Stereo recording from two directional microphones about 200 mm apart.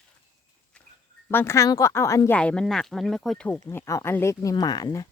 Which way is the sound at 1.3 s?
10° left (ahead or behind).